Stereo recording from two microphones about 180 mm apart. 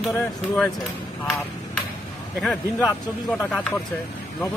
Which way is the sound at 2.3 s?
Centre (ahead or behind).